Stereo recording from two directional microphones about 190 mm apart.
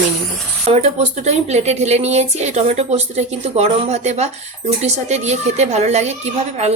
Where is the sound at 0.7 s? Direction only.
35° right (ahead or behind).